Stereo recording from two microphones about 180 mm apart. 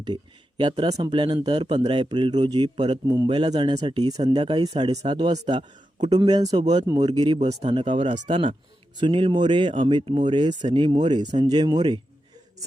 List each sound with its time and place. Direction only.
0.0 s speech: 25° right (ahead or behind)
7.3 s speech: 35° right (ahead or behind)